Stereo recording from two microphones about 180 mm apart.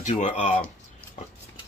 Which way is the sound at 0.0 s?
40° left (ahead or behind).